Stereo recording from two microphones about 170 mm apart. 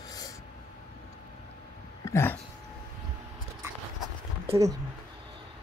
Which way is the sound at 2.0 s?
15° left (ahead or behind).